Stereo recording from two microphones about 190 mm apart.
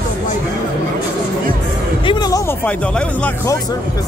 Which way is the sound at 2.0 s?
20° left (ahead or behind).